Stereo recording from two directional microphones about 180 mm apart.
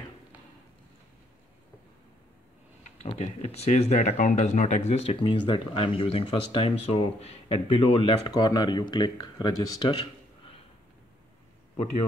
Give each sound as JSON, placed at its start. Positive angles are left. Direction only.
{"t": 3.0, "sound": "speech", "side_deg": 35}
{"t": 11.7, "sound": "a man's voice", "side_deg": 40}